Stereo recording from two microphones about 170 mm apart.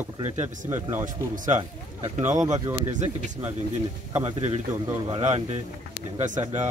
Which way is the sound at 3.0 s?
45° right (ahead or behind).